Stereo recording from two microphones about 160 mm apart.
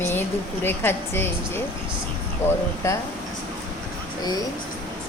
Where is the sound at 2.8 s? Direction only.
15° left (ahead or behind).